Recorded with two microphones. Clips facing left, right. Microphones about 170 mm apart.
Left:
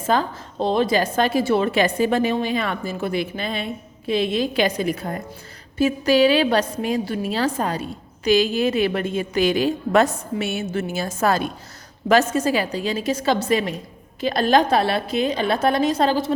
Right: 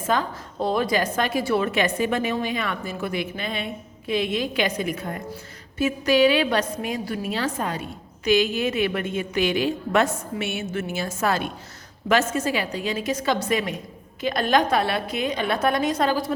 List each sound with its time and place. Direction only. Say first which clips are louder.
0.1 s a woman's voice: left 3 dB; 30° left (ahead or behind)